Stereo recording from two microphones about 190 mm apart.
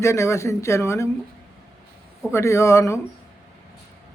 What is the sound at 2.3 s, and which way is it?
Speech, 15° left (ahead or behind).